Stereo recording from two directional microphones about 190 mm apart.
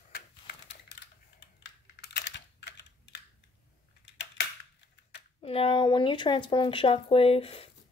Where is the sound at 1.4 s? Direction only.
65° left (ahead or behind).